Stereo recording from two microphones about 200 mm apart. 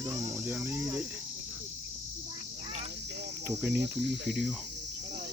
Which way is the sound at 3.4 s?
10° right (ahead or behind).